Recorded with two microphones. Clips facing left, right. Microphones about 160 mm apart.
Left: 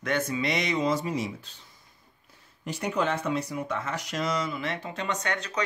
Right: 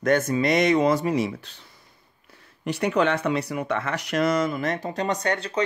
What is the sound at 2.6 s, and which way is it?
Speech, 70° right (ahead or behind).